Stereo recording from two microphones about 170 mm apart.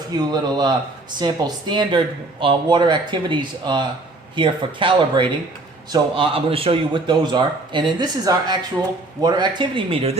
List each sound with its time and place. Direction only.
0.3 s speech: 25° right (ahead or behind)